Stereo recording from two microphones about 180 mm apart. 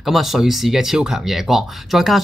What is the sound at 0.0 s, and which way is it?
Speech, centre (ahead or behind).